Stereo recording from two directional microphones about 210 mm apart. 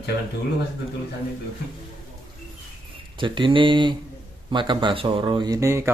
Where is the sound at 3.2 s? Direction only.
25° right (ahead or behind).